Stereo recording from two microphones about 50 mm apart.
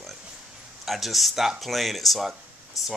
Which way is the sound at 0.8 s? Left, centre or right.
Centre.